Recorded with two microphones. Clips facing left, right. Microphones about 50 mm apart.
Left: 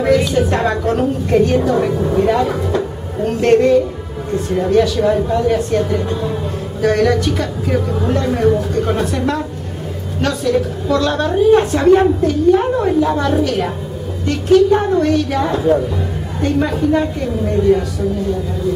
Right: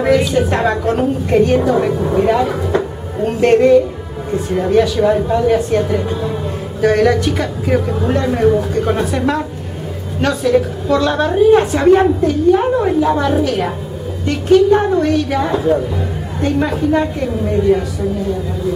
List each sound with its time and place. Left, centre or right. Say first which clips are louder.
0.0 s a woman's voice: right 1 dB; centre
2.7 s music: right 1 dB; centre
4.3 s a woman's voice: even; centre